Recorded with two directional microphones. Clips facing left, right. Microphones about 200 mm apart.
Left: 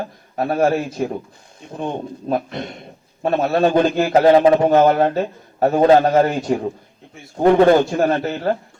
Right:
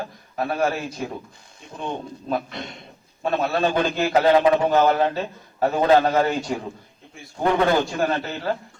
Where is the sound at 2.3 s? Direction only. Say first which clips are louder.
Left 4 dB; 45° left (ahead or behind).